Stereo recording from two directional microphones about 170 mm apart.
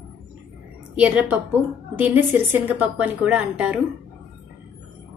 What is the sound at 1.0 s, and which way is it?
A woman's voice, 10° right (ahead or behind).